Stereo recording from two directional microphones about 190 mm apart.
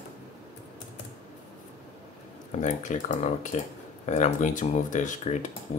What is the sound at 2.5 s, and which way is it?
Speech, 40° left (ahead or behind).